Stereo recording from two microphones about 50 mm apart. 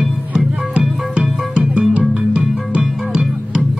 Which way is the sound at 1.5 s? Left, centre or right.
Right.